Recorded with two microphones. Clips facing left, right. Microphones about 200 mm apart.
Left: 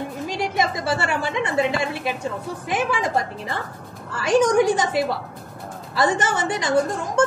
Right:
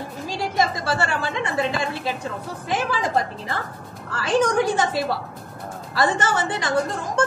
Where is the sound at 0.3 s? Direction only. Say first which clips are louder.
Right 1 dB; 20° left (ahead or behind).